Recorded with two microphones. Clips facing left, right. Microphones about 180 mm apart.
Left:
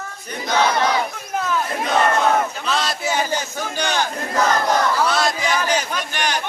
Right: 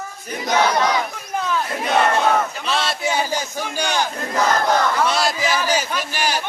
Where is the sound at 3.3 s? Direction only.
10° right (ahead or behind).